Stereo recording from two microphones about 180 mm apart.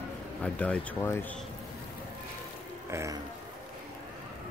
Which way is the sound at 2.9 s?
15° right (ahead or behind).